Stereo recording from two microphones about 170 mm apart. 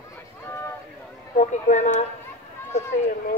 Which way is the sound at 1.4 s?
45° left (ahead or behind).